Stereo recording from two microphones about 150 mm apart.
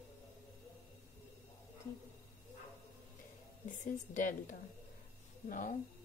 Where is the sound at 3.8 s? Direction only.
60° left (ahead or behind).